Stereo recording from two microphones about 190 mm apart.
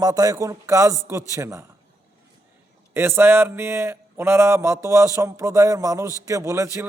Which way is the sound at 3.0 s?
10° right (ahead or behind).